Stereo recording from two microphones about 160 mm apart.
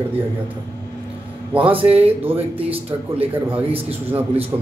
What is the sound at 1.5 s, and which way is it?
Speech, 35° right (ahead or behind).